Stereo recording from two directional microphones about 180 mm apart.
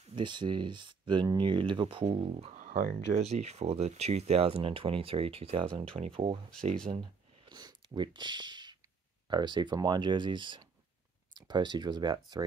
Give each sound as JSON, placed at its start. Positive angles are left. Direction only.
{"t": 0.1, "sound": "speech", "side_deg": -25}
{"t": 6.9, "sound": "a sound", "side_deg": -25}
{"t": 9.3, "sound": "speech", "side_deg": -25}